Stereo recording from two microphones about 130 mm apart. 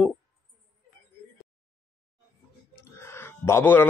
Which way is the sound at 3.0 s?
20° left (ahead or behind).